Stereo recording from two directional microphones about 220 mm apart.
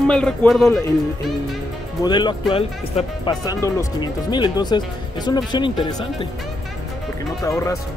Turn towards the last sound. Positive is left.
turn(degrees=15)  # may be behind; listen again after turning